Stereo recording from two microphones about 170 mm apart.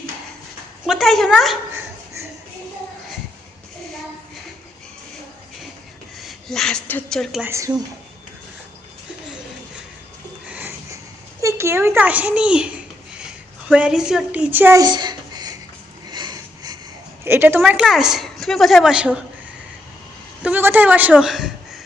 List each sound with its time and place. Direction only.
0.9 s a woman's voice: centre (ahead or behind)
6.2 s a woman's voice: centre (ahead or behind)
7.4 s speech: 15° right (ahead or behind)
10.5 s a sound: 10° right (ahead or behind)
11.4 s a child's voice: 15° right (ahead or behind)
16.0 s sniff: 25° right (ahead or behind)
17.2 s a woman's voice: 10° right (ahead or behind)
20.4 s a woman's voice: 10° right (ahead or behind)